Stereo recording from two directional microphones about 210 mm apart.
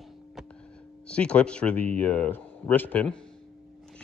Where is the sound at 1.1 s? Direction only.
5° left (ahead or behind).